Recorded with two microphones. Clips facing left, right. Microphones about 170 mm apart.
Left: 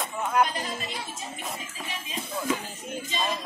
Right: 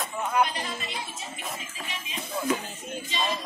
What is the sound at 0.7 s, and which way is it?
Speech, 40° left (ahead or behind).